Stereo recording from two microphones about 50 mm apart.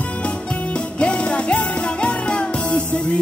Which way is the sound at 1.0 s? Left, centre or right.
Left.